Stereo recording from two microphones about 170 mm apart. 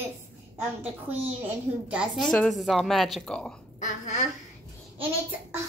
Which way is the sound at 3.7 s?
45° left (ahead or behind).